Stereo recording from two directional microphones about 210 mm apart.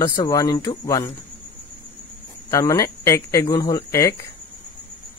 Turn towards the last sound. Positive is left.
turn(degrees=15)  # may be behind; listen again after turning